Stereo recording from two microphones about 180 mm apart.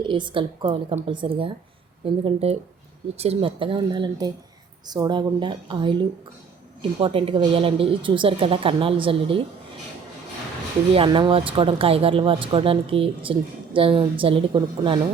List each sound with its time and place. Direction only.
0.0 s speech: 25° right (ahead or behind)
10.9 s speech: 25° right (ahead or behind)